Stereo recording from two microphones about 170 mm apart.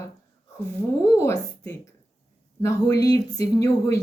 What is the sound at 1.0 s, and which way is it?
A woman's voice, 15° left (ahead or behind).